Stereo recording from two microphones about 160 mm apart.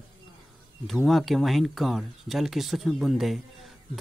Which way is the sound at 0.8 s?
Centre (ahead or behind).